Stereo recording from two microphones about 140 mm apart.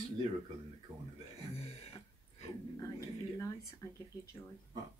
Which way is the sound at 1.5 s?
50° left (ahead or behind).